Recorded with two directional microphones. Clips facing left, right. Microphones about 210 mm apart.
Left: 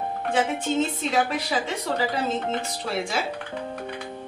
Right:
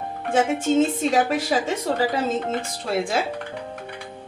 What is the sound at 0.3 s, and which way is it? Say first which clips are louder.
A woman's voice: right 5 dB; 45° right (ahead or behind).